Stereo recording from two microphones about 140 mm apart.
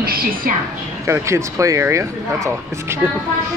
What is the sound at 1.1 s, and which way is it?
Speech, 20° right (ahead or behind).